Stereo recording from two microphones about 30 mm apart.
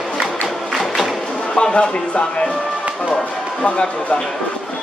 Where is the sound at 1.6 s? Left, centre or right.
Left.